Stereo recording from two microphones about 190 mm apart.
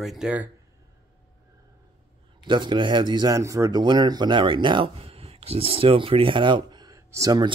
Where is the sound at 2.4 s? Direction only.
25° right (ahead or behind).